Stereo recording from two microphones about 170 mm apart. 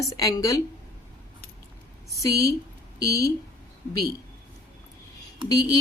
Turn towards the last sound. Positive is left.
turn(degrees=20)  # may be behind; listen again after turning